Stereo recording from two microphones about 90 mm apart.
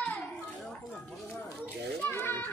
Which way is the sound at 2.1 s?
25° left (ahead or behind).